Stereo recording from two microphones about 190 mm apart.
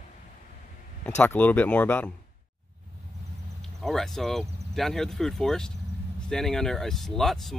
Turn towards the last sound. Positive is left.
turn(degrees=0)  # may be behind; listen again after turning